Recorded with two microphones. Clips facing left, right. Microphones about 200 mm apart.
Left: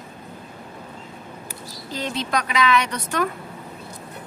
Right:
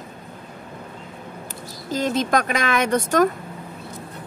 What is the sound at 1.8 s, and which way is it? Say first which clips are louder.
Speech: right 6 dB; 45° right (ahead or behind).